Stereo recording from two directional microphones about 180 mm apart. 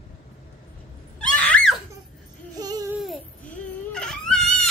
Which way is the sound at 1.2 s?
5° left (ahead or behind).